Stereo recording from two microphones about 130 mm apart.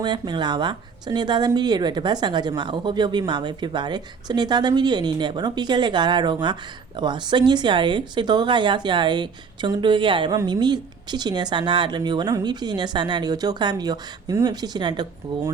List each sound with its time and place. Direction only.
0.0 s speech: 35° right (ahead or behind)